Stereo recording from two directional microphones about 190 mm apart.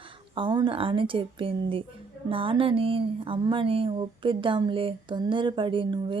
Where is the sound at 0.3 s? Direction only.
25° right (ahead or behind).